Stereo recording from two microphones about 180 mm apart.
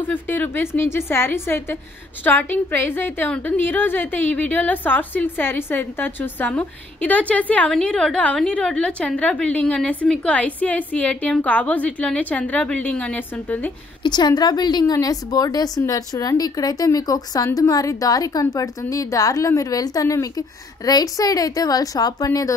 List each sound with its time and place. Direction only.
0.0 s a woman's voice: 10° left (ahead or behind)
14.0 s a woman's voice: 25° left (ahead or behind)